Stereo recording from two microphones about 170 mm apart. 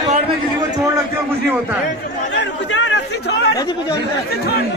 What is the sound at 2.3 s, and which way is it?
Chatter, 90° left.